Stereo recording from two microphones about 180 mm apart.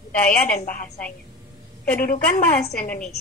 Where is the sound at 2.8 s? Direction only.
5° left (ahead or behind).